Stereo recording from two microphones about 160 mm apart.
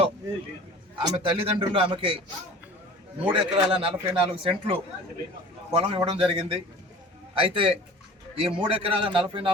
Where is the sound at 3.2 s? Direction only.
35° right (ahead or behind).